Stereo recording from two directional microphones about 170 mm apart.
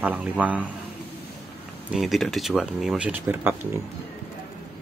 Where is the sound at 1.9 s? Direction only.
Centre (ahead or behind).